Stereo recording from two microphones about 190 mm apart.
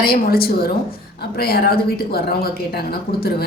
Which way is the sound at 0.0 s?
50° left (ahead or behind).